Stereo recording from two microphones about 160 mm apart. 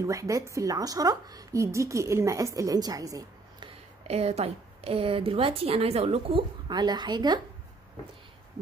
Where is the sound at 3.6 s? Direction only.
40° right (ahead or behind).